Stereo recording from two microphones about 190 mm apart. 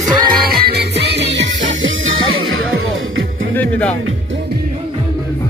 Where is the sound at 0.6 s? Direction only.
60° right (ahead or behind).